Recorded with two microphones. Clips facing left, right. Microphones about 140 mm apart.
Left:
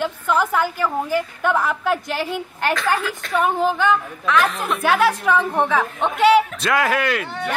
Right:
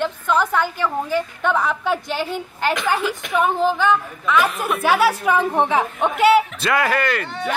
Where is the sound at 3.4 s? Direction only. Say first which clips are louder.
Even; centre (ahead or behind); by 6.1 s 15° right (ahead or behind).